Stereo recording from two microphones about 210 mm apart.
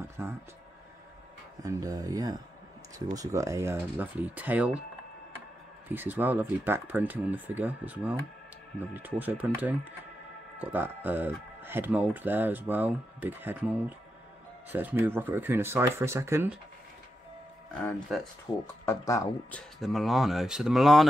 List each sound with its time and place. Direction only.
0.2 s speech: 10° right (ahead or behind)
1.6 s speech: 15° right (ahead or behind)
5.9 s speech: 10° right (ahead or behind)
17.8 s speech: centre (ahead or behind)
18.9 s speech: 15° left (ahead or behind)
19.8 s speech: centre (ahead or behind)